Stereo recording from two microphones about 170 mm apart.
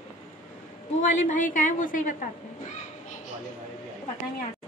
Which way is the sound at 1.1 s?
45° left (ahead or behind).